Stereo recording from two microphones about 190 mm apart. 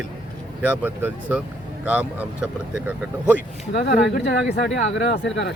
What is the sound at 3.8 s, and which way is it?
Speech, 60° left (ahead or behind).